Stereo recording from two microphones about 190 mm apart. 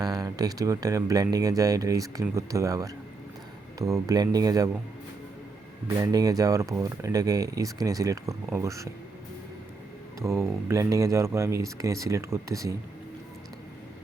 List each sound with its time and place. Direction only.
0.0 s speech: 20° right (ahead or behind)
6.0 s speech: 20° right (ahead or behind)
10.2 s speech: 15° right (ahead or behind)